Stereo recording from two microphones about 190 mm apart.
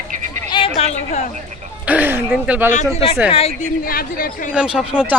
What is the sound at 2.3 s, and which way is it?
Speech, 5° right (ahead or behind).